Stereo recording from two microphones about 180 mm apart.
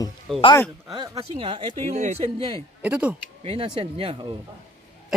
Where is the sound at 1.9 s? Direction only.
40° right (ahead or behind).